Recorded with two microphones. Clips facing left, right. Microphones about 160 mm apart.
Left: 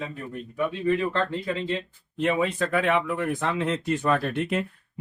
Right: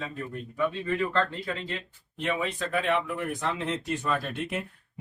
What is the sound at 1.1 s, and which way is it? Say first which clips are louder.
Speech: left 2 dB; 25° left (ahead or behind).